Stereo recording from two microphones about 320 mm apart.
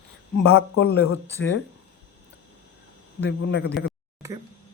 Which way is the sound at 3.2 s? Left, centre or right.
Left.